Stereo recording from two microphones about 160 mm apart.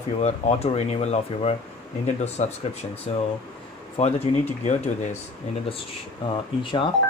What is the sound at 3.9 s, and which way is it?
Speech, 40° left (ahead or behind).